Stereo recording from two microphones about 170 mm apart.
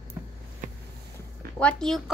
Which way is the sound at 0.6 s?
45° right (ahead or behind).